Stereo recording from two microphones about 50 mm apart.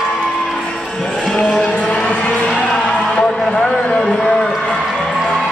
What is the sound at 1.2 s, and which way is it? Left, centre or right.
Music, centre.